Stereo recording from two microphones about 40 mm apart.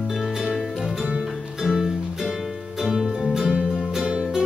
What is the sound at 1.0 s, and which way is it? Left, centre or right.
Music, right.